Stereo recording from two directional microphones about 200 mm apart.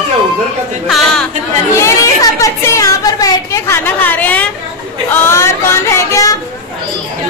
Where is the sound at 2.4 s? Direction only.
15° left (ahead or behind).